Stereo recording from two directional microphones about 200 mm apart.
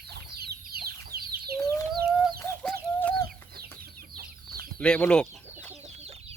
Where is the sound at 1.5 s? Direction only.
15° left (ahead or behind).